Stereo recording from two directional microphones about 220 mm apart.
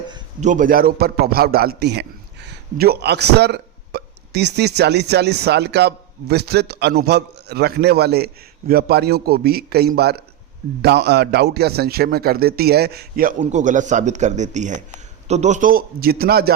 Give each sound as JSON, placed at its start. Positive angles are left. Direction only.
{"t": 0.4, "sound": "a man's voice", "side_deg": -35}